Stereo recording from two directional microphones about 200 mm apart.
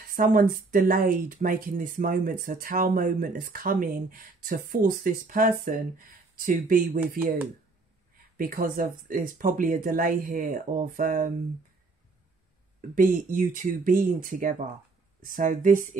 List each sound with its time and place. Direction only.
0.1 s speech: 45° right (ahead or behind)
8.4 s speech: 45° right (ahead or behind)
12.9 s speech: 45° right (ahead or behind)